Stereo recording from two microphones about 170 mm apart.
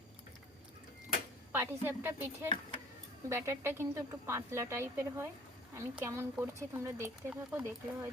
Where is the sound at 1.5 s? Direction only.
15° right (ahead or behind).